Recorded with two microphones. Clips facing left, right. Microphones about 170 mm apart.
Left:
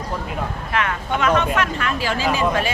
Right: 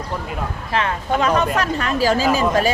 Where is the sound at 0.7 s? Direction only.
30° right (ahead or behind).